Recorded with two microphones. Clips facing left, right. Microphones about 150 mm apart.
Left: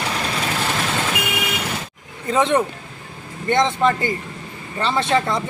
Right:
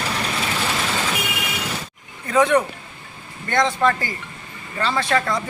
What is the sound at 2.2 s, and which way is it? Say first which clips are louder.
Speech: right 1 dB; 25° left (ahead or behind).